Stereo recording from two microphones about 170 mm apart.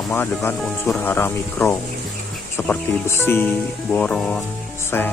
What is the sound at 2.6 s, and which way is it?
Chicken, 5° left (ahead or behind).